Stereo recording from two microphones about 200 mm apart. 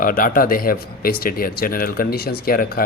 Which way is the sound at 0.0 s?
45° left (ahead or behind).